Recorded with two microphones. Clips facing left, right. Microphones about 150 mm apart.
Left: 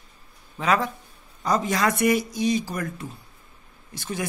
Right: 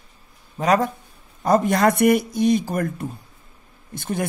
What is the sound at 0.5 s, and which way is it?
Speech, 45° right (ahead or behind).